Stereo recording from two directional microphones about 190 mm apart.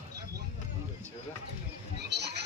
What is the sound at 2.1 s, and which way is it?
Music, 65° right (ahead or behind).